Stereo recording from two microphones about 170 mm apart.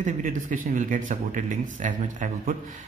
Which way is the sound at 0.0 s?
50° right (ahead or behind).